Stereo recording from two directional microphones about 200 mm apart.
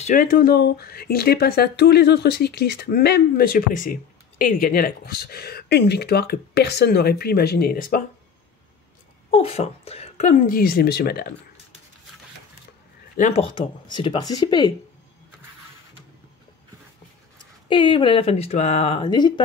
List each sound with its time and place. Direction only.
0.0 s speech: 45° left (ahead or behind)
9.3 s a woman's voice: 30° left (ahead or behind); by 11.3 s 50° left (ahead or behind)
13.1 s speech: 35° left (ahead or behind)
17.6 s speech: 25° left (ahead or behind)